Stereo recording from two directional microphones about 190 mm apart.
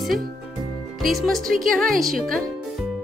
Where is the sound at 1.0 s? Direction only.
Centre (ahead or behind).